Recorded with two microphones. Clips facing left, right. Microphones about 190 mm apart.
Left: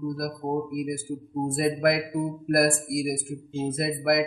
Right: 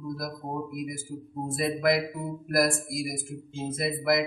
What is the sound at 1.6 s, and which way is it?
Speech, 55° left (ahead or behind).